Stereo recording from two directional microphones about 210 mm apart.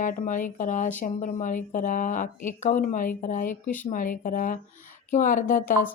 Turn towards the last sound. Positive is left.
turn(degrees=40)  # may be behind; listen again after turning